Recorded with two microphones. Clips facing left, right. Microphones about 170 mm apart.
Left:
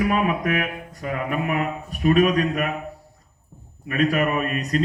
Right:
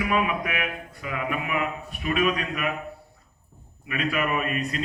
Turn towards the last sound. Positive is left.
turn(degrees=40)  # may be behind; listen again after turning